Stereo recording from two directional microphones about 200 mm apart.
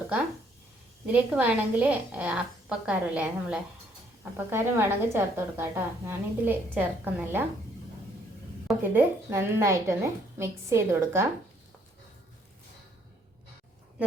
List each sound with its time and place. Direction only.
1.0 s a woman's voice: 5° right (ahead or behind)
8.6 s a woman's voice: 10° right (ahead or behind)